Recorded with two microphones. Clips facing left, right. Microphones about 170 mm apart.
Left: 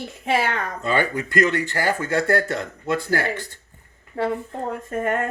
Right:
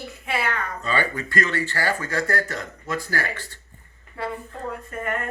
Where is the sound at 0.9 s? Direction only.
15° left (ahead or behind).